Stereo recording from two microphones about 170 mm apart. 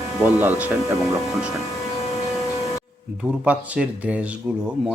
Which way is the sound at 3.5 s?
5° right (ahead or behind).